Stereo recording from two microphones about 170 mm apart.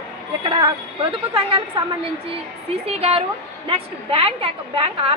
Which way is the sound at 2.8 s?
35° right (ahead or behind).